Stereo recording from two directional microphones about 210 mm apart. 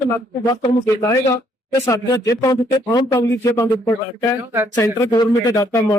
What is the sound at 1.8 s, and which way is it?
Speech, 15° left (ahead or behind).